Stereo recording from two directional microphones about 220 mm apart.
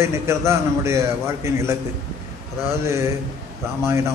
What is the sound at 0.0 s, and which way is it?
A man's voice, 10° right (ahead or behind).